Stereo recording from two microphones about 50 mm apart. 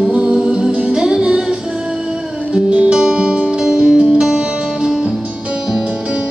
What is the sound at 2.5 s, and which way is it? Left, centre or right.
Music, right.